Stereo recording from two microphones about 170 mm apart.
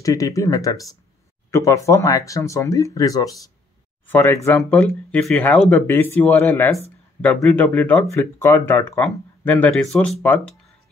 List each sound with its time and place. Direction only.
0.0 s speech: 20° left (ahead or behind)